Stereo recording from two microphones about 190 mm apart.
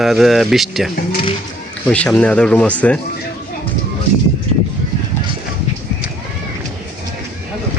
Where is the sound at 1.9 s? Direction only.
5° left (ahead or behind).